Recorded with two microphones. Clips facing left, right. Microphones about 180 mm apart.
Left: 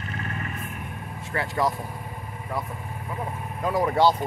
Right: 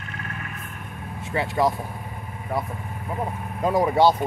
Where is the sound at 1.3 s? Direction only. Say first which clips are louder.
Right 3 dB; 20° right (ahead or behind).